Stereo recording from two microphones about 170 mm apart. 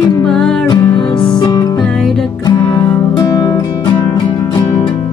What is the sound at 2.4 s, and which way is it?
Music, 25° left (ahead or behind).